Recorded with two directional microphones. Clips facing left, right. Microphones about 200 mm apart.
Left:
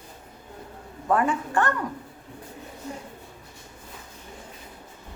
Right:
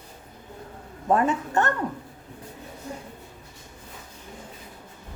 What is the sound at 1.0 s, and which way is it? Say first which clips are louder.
Speech: right 1 dB; 25° right (ahead or behind).